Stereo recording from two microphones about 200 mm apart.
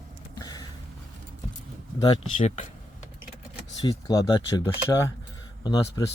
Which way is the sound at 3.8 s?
20° left (ahead or behind).